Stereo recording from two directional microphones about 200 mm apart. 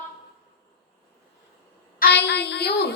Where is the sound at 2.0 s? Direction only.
55° left (ahead or behind).